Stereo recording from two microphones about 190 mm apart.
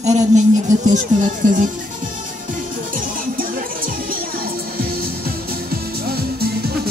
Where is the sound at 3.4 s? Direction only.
50° right (ahead or behind).